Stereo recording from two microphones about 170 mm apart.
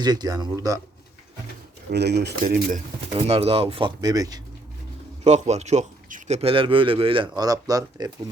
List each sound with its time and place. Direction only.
0.0 s speech: 25° right (ahead or behind)
1.9 s speech: 75° right (ahead or behind)
2.4 s speech: 55° right (ahead or behind)
3.2 s a man's voice: 35° right (ahead or behind)
5.2 s a man's voice: 40° right (ahead or behind); by 8.1 s 20° right (ahead or behind)